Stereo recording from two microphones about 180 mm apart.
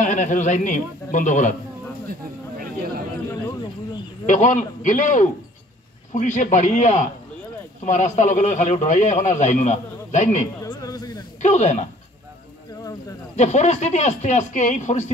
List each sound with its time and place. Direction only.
0.0 s speech: 45° left (ahead or behind)
4.3 s a man's voice: 40° left (ahead or behind)
10.6 s a sound: 20° left (ahead or behind)
11.4 s a man's voice: 40° left (ahead or behind)
13.4 s a man's voice: 40° left (ahead or behind)